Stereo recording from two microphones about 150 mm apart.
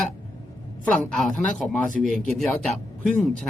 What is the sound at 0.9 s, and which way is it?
Speech, 5° left (ahead or behind).